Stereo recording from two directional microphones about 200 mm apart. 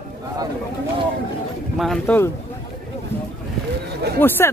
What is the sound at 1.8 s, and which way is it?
Speech, 5° left (ahead or behind).